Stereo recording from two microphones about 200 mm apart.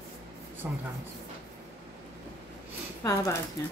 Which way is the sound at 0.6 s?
5° right (ahead or behind).